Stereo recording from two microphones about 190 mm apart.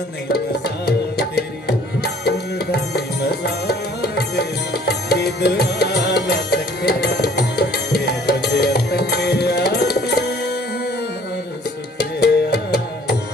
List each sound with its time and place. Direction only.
0.8 s music: 60° left (ahead or behind)
12.2 s music: 60° left (ahead or behind)